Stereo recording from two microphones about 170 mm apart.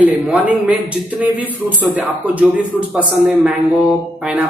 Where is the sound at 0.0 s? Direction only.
10° right (ahead or behind).